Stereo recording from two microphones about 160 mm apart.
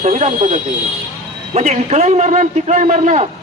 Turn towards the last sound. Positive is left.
turn(degrees=-50)  # may be behind; listen again after turning